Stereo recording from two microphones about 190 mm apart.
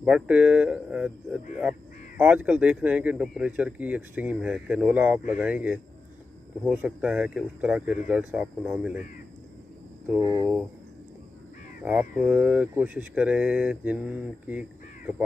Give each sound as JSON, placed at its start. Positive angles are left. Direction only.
{"t": 0.0, "sound": "speech", "side_deg": -5}
{"t": 10.2, "sound": "speech", "side_deg": -20}
{"t": 11.8, "sound": "speech", "side_deg": -5}